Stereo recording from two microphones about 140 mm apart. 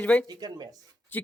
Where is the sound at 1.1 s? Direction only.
10° left (ahead or behind).